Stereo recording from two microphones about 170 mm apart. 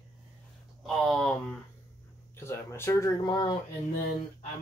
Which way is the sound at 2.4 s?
15° left (ahead or behind).